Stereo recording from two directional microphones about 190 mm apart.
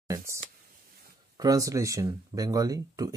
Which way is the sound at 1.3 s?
20° right (ahead or behind).